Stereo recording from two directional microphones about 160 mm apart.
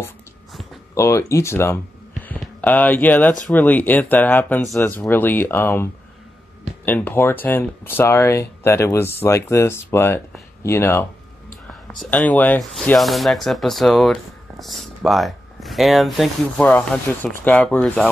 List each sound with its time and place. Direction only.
0.9 s speech: 15° left (ahead or behind)
6.9 s speech: 10° left (ahead or behind)